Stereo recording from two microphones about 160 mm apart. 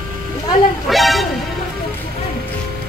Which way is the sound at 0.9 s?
Centre (ahead or behind).